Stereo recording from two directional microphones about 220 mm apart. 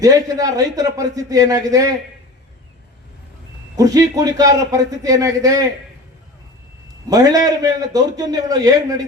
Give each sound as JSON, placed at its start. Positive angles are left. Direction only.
{"t": 0.0, "sound": "a man's voice", "side_deg": -15}
{"t": 3.8, "sound": "a man's voice", "side_deg": -15}
{"t": 7.1, "sound": "a man's voice", "side_deg": -15}